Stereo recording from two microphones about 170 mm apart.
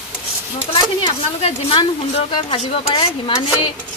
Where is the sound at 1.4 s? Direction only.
35° left (ahead or behind).